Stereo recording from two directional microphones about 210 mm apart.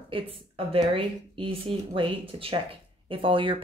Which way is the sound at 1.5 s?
25° right (ahead or behind).